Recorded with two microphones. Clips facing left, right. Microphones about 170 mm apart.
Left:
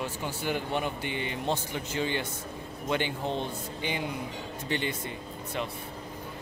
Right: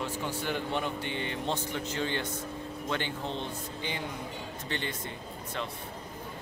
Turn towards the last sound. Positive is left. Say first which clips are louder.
# left 4 dB
turn(degrees=15)  # may be behind; listen again after turning